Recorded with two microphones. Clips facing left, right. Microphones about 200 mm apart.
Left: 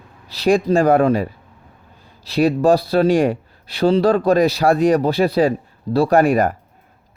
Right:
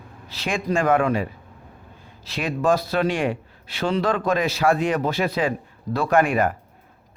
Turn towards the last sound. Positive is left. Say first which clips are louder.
# left 5 dB
turn(degrees=40)  # may be behind; listen again after turning